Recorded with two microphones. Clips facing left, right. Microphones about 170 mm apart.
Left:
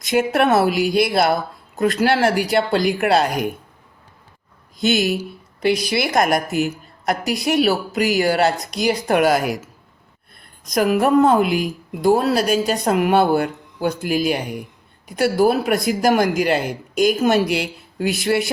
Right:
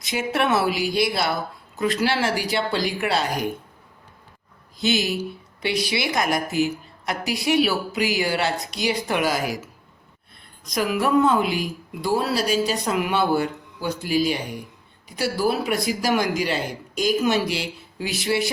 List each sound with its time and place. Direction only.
0.0 s speech: 50° left (ahead or behind)
4.8 s speech: 50° left (ahead or behind)
10.8 s speech: 50° left (ahead or behind)